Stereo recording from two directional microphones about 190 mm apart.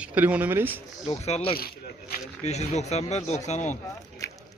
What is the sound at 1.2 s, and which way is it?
Speech, 30° left (ahead or behind).